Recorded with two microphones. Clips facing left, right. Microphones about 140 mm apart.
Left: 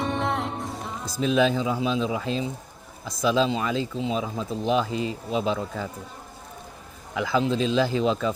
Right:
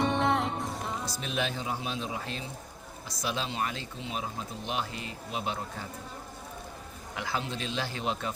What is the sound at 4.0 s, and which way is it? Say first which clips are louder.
Speech: left 12 dB; 90° left.